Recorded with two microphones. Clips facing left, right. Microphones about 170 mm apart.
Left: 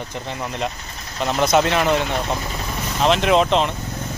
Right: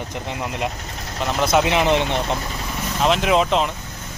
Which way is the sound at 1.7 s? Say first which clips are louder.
Right 1 dB; 20° right (ahead or behind).